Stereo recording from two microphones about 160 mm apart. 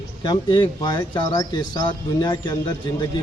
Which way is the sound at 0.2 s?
30° left (ahead or behind).